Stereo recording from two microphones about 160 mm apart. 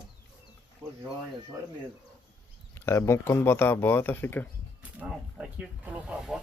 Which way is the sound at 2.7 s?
15° left (ahead or behind).